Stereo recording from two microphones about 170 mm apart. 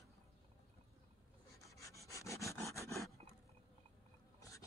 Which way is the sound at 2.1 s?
20° left (ahead or behind).